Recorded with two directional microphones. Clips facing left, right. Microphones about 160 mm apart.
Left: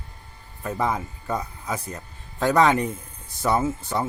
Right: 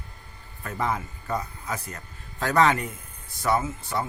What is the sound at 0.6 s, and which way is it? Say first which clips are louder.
Speech: left 3 dB; 15° left (ahead or behind).